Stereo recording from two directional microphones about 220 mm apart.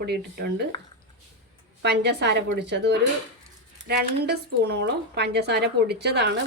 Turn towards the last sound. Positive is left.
turn(degrees=-50)  # may be behind; listen again after turning